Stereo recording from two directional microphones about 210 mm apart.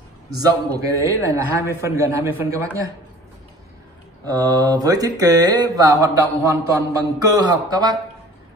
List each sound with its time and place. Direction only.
0.7 s speech: 15° right (ahead or behind)
4.2 s speech: 20° right (ahead or behind)